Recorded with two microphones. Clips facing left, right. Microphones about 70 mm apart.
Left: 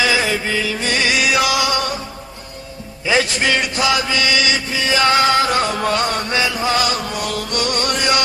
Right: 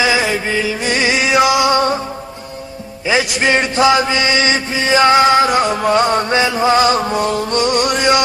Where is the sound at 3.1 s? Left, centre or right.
Centre.